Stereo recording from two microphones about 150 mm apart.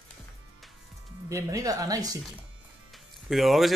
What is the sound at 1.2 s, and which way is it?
Speech, 20° right (ahead or behind).